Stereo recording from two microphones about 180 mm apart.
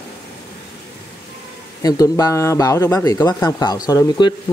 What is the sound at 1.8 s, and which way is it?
Speech, 20° left (ahead or behind).